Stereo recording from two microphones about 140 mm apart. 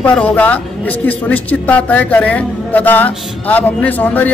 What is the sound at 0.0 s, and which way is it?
A man's voice, 10° left (ahead or behind).